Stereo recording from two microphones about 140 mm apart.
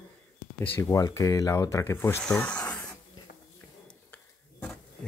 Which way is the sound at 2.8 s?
25° left (ahead or behind).